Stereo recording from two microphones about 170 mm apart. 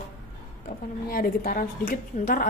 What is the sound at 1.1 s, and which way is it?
A woman's voice, 60° left (ahead or behind).